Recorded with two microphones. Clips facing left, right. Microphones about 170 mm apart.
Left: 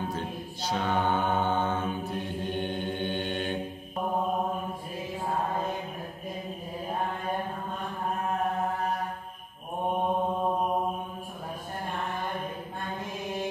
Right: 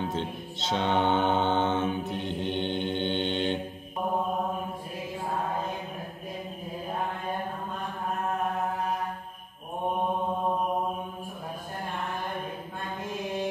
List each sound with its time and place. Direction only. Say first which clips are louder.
0.0 s mantra: right 2 dB; 25° right (ahead or behind)